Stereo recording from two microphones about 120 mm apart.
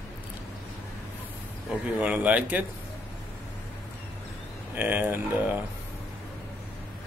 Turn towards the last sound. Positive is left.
turn(degrees=-15)  # may be behind; listen again after turning